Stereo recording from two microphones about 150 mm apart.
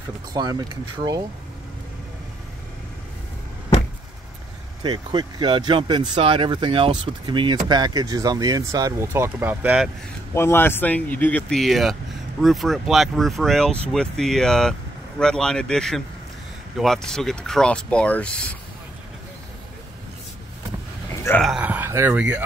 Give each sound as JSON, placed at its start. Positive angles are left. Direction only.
{"t": 0.3, "sound": "speech", "side_deg": -25}
{"t": 4.8, "sound": "speech", "side_deg": -30}
{"t": 10.3, "sound": "speech", "side_deg": 15}
{"t": 21.4, "sound": "speech", "side_deg": -5}